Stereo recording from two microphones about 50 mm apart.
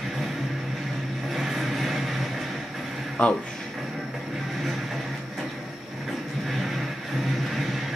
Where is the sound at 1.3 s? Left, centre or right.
Centre.